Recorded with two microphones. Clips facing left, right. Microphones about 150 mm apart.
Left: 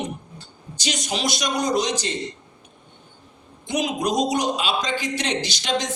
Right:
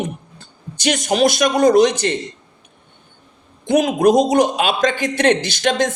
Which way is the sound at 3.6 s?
55° right (ahead or behind).